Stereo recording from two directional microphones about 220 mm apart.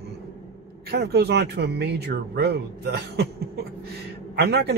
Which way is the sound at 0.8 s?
45° right (ahead or behind).